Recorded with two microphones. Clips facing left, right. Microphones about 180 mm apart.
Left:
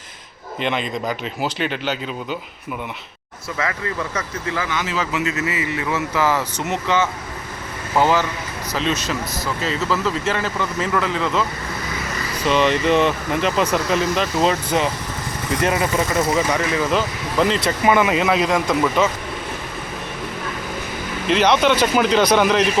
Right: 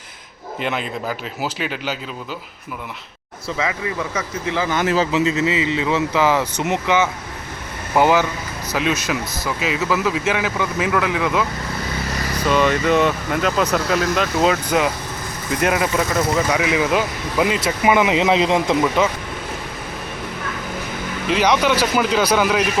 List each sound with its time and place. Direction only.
0.6 s speech: 5° right (ahead or behind)
3.6 s speech: 15° right (ahead or behind)
4.7 s speech: 55° right (ahead or behind)
4.9 s speech: 30° right (ahead or behind)
5.4 s speech: 20° right (ahead or behind)
12.5 s speech: 5° right (ahead or behind)
16.6 s speech: 10° right (ahead or behind)
21.2 s speech: 10° right (ahead or behind)